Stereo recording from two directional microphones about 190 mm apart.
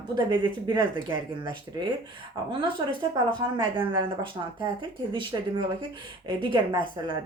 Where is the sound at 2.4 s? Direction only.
25° right (ahead or behind).